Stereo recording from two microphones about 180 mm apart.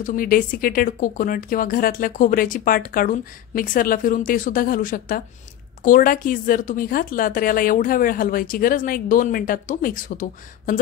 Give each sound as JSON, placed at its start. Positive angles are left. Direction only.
{"t": 0.0, "sound": "speech", "side_deg": 50}